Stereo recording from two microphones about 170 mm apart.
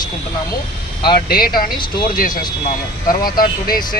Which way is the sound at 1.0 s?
65° left (ahead or behind).